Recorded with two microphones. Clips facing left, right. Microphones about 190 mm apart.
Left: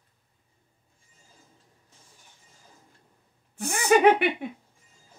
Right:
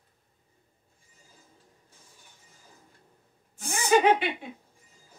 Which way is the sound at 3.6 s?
60° left (ahead or behind).